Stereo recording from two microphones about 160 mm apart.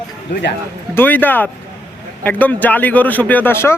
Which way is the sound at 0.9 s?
10° left (ahead or behind).